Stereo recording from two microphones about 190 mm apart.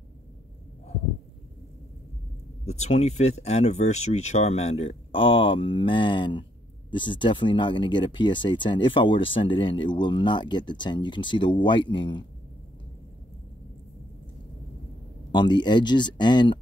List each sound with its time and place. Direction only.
2.6 s speech: 35° left (ahead or behind)
15.3 s speech: 25° left (ahead or behind)